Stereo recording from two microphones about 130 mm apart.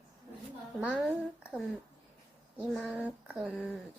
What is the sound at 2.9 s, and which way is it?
Speech, 10° right (ahead or behind).